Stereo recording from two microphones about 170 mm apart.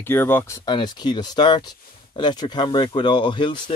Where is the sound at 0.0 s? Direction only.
10° left (ahead or behind).